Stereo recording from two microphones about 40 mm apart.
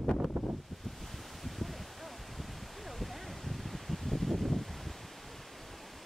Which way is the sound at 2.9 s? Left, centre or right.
Centre.